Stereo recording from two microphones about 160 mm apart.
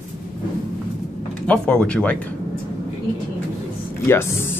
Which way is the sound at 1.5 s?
5° left (ahead or behind).